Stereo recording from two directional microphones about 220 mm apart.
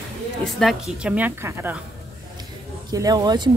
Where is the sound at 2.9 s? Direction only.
15° right (ahead or behind).